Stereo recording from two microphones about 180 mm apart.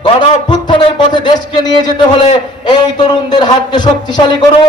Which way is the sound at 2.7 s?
25° left (ahead or behind).